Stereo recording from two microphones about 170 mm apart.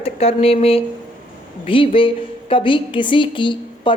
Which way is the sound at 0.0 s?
35° left (ahead or behind).